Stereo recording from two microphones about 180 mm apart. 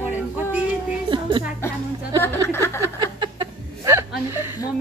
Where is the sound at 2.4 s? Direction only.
15° left (ahead or behind).